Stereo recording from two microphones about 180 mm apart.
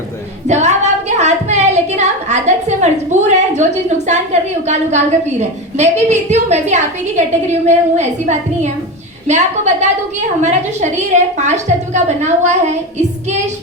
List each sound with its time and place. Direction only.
0.4 s a woman's voice: 40° right (ahead or behind)